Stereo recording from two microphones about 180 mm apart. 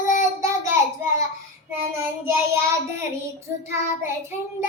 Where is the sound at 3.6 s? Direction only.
15° right (ahead or behind).